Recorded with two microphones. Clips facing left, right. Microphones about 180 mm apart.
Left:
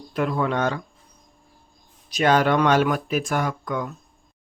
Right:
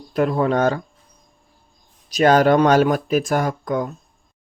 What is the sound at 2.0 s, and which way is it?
Speech, 40° right (ahead or behind).